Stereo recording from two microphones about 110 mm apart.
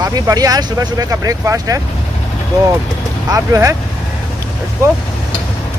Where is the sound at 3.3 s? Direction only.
30° right (ahead or behind).